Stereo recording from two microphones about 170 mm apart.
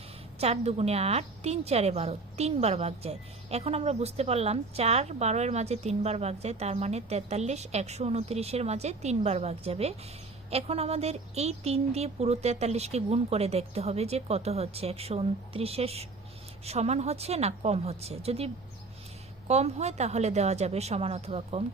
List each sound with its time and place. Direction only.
0.3 s a woman's voice: 35° right (ahead or behind)